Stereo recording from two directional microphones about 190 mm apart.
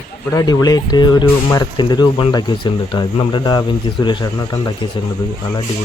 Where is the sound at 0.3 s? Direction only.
20° left (ahead or behind).